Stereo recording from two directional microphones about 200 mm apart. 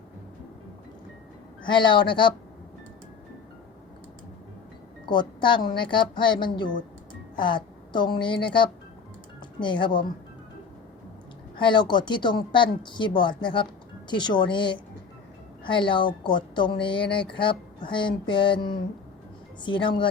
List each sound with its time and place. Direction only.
1.6 s speech: 25° left (ahead or behind)
5.0 s a woman's voice: 25° left (ahead or behind)
11.5 s speech: 25° left (ahead or behind)